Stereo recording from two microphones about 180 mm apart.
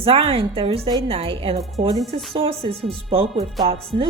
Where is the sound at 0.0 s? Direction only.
30° right (ahead or behind).